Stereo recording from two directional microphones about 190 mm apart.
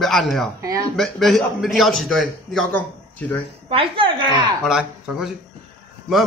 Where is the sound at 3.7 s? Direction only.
30° right (ahead or behind).